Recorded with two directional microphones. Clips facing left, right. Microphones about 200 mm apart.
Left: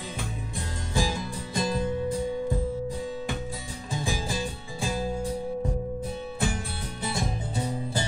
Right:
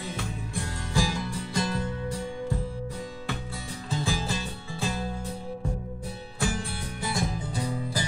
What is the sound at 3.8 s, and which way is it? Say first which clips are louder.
Music: right 1 dB; 15° left (ahead or behind).